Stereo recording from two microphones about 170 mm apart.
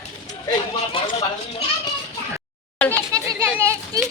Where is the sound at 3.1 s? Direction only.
15° right (ahead or behind).